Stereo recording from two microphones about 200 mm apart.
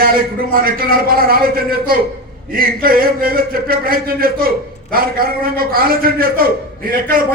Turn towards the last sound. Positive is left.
turn(degrees=-45)  # may be behind; listen again after turning